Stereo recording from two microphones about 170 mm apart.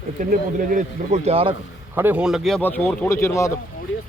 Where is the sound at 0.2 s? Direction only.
50° right (ahead or behind); by 1.5 s 35° right (ahead or behind).